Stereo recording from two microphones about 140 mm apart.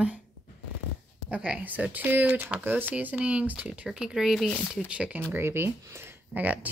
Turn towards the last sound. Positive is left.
turn(degrees=-10)  # may be behind; listen again after turning